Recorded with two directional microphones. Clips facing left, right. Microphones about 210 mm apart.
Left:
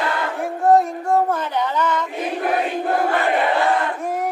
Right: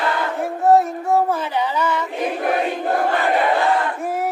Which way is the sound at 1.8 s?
10° right (ahead or behind).